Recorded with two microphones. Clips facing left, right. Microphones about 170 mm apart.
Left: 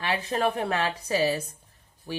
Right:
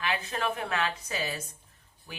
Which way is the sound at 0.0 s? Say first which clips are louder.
Left 5 dB; 35° left (ahead or behind).